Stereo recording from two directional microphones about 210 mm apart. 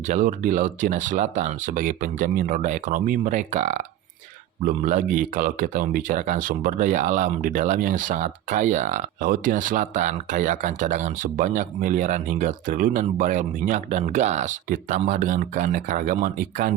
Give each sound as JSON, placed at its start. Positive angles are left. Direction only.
{"t": 0.1, "sound": "a man's voice", "side_deg": -40}